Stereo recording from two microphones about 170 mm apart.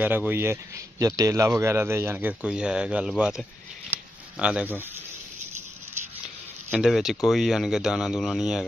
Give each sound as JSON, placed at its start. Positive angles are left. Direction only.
{"t": 0.0, "sound": "speech", "side_deg": -10}
{"t": 3.9, "sound": "shuffling cards", "side_deg": -5}
{"t": 6.7, "sound": "speech", "side_deg": 0}